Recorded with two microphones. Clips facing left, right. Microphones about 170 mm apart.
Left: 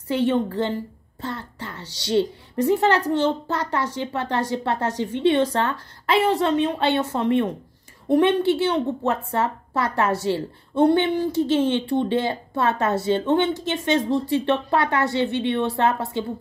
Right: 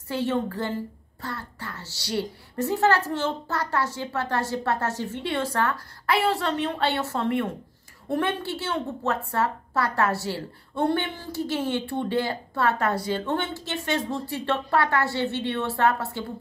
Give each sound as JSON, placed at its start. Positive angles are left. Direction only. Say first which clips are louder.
{"t": 0.1, "sound": "speech", "louder": "left 5 dB", "side_deg": 20}